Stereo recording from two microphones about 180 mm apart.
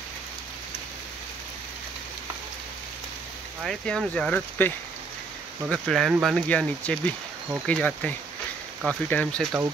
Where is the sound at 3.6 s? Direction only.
Centre (ahead or behind).